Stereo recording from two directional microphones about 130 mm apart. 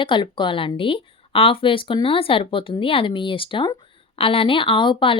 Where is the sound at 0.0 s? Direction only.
40° left (ahead or behind).